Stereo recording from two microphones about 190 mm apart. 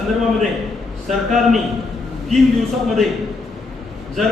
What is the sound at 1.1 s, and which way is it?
Speech, centre (ahead or behind).